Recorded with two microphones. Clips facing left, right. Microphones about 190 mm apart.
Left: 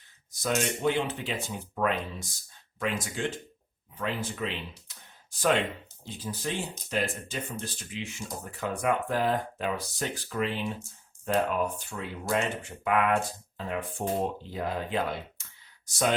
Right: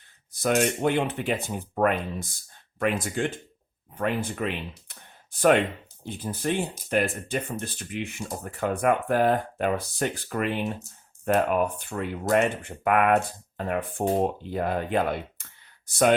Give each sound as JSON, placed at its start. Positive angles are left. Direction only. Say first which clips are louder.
{"t": 0.4, "sound": "speech", "louder": "right 4 dB", "side_deg": -60}